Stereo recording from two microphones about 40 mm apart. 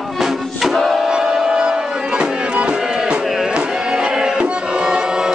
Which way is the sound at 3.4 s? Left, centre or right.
Centre.